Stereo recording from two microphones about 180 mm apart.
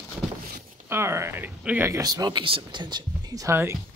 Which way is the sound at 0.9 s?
15° right (ahead or behind).